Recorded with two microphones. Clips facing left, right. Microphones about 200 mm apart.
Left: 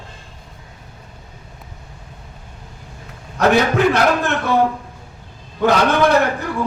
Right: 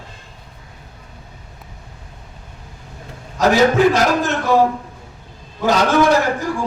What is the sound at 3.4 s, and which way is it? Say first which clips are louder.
Speech: right 2 dB; 60° left (ahead or behind).